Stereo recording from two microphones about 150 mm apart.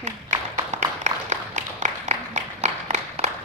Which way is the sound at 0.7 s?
55° right (ahead or behind).